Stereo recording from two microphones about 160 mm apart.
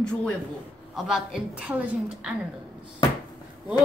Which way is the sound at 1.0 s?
5° right (ahead or behind).